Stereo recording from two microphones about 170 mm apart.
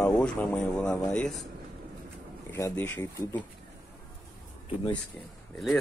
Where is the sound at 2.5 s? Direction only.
10° left (ahead or behind).